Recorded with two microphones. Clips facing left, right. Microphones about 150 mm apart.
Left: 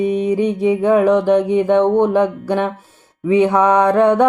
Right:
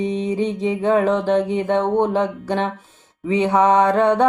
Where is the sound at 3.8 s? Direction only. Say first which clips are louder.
Left 3 dB; 15° left (ahead or behind).